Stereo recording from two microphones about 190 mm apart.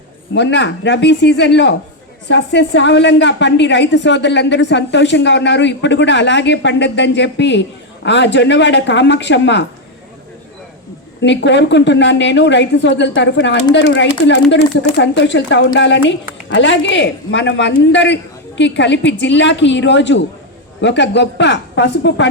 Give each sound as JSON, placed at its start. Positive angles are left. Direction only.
{"t": 0.3, "sound": "a woman's voice", "side_deg": 65}
{"t": 11.2, "sound": "a woman's voice", "side_deg": 70}